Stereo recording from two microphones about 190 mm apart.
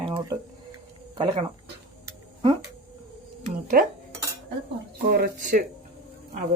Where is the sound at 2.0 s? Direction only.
25° right (ahead or behind).